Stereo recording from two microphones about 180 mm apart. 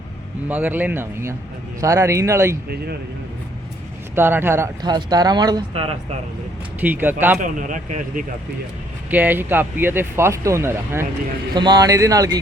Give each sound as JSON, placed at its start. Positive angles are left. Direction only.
{"t": 0.4, "sound": "speech", "side_deg": -10}
{"t": 4.1, "sound": "speech", "side_deg": -10}
{"t": 6.7, "sound": "speech", "side_deg": -10}
{"t": 7.3, "sound": "speech", "side_deg": -45}
{"t": 9.0, "sound": "speech", "side_deg": -10}